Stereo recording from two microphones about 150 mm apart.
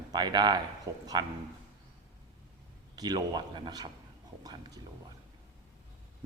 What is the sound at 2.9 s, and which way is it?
A man's voice, 25° right (ahead or behind).